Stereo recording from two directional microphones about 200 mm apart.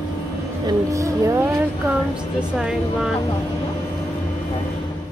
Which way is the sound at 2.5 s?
5° right (ahead or behind).